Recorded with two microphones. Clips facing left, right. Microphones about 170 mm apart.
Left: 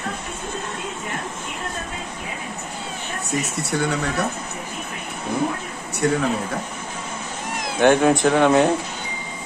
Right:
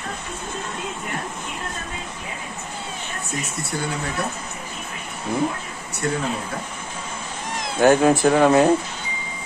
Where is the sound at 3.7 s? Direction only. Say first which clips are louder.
Left 5 dB; 65° left (ahead or behind).